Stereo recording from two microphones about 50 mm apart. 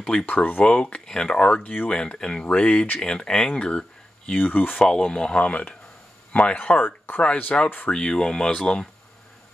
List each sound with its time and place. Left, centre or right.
0.0 s speech: centre
0.3 s speech: left
0.7 s speech: left
1.6 s speech: left
1.9 s speech: centre
4.3 s speech: left
4.8 s speech: centre; by 6.9 s left
7.5 s speech: left